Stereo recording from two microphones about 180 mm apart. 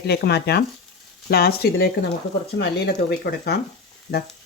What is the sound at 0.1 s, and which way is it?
Speech, 65° left (ahead or behind).